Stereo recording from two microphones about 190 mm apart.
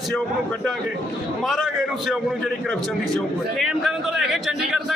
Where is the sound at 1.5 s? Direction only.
Centre (ahead or behind).